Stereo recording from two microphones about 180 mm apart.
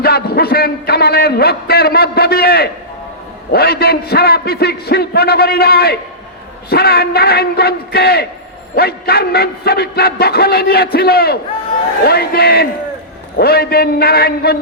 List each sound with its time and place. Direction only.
0.0 s a man's voice: 60° left (ahead or behind)